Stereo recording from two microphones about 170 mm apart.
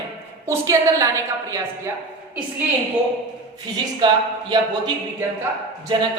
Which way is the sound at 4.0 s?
25° right (ahead or behind).